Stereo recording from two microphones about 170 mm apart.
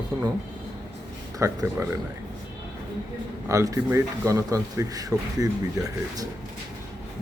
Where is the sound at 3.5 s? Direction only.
20° right (ahead or behind).